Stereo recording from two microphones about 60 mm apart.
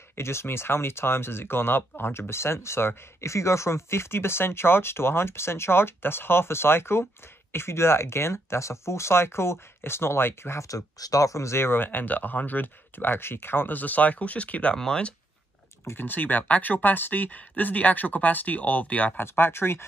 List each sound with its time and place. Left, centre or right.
0.1 s speech: left
10.6 s speech: left; by 15.1 s centre
15.8 s speech: left
19.1 s speech: left